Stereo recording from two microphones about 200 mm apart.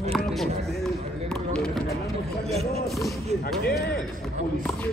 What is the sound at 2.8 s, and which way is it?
Speech, centre (ahead or behind).